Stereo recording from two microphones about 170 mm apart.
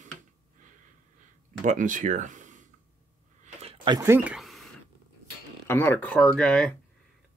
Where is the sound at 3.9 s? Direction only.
15° right (ahead or behind).